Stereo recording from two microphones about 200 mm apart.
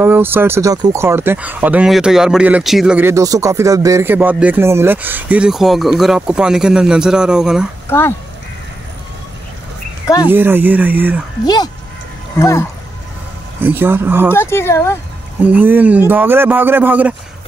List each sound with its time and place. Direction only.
0.0 s speech: 10° right (ahead or behind)
10.0 s speech: 20° left (ahead or behind)
10.3 s speech: 10° right (ahead or behind)
11.4 s speech: 20° left (ahead or behind)
13.6 s speech: 10° right (ahead or behind)
14.3 s speech: 10° left (ahead or behind)
15.4 s speech: 10° right (ahead or behind)